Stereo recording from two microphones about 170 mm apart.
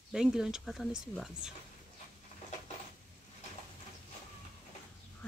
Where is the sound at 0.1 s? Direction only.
5° right (ahead or behind).